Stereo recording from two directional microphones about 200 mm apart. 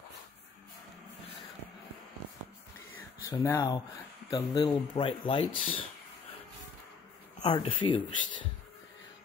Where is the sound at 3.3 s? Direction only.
15° left (ahead or behind).